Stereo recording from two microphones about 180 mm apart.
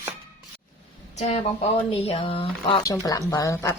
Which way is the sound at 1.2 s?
35° left (ahead or behind).